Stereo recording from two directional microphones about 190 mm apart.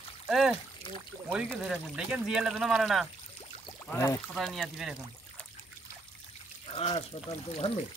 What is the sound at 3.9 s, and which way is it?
Speech, 15° left (ahead or behind).